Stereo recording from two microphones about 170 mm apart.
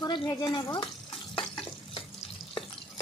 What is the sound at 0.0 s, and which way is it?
Stir, 25° left (ahead or behind).